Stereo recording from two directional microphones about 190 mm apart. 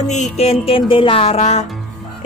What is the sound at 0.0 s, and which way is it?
Speech, 40° left (ahead or behind).